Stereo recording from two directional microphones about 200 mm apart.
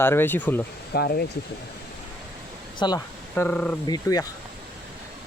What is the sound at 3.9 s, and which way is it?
Speech, 20° left (ahead or behind).